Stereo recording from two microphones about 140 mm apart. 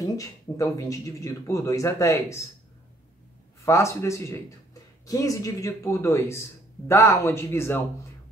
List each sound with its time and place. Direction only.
0.0 s speech: 25° left (ahead or behind)
3.6 s speech: 20° left (ahead or behind)